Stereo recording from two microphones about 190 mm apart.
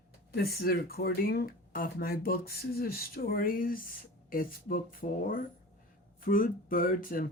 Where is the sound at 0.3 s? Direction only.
55° left (ahead or behind).